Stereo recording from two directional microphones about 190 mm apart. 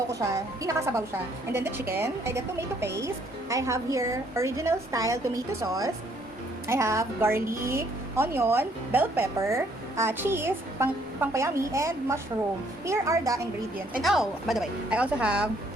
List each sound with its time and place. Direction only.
0.1 s a woman's voice: 15° right (ahead or behind)
13.9 s speech: centre (ahead or behind)